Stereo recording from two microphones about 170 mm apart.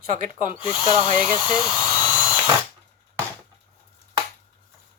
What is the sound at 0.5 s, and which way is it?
Speech, 30° left (ahead or behind).